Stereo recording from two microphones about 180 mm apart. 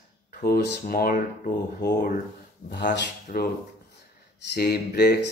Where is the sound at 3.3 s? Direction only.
50° left (ahead or behind).